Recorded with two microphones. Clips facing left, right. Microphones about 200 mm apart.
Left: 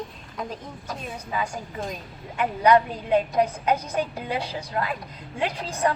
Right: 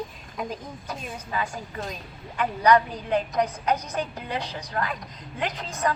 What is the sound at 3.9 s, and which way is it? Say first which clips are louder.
Speech: left 3 dB; 10° left (ahead or behind).